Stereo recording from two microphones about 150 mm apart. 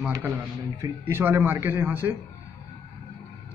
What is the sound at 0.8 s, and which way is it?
Speech, 15° right (ahead or behind).